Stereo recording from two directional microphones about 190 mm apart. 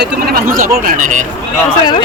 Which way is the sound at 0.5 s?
45° right (ahead or behind).